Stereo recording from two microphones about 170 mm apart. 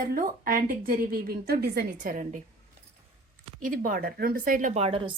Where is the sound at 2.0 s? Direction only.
45° right (ahead or behind).